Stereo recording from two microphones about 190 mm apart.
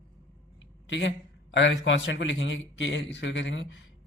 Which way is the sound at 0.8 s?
70° left (ahead or behind).